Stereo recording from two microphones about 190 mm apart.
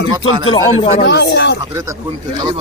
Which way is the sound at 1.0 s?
65° left (ahead or behind).